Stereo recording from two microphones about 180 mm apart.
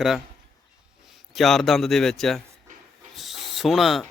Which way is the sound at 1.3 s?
Centre (ahead or behind).